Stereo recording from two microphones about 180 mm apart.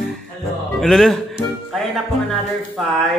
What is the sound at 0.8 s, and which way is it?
Speech, centre (ahead or behind).